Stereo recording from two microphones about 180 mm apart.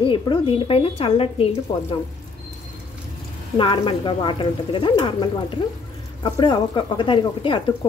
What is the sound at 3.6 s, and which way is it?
A woman's voice, 30° left (ahead or behind).